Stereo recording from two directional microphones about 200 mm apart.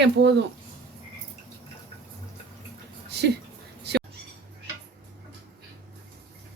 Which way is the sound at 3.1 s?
55° right (ahead or behind).